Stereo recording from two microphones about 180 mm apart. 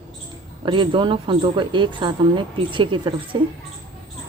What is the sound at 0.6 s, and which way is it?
Speech, 25° right (ahead or behind).